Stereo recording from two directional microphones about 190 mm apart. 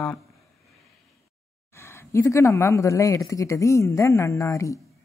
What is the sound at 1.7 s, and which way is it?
Speech, 15° left (ahead or behind).